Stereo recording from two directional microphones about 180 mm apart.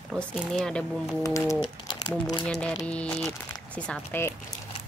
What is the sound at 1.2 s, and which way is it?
Speech, 20° left (ahead or behind).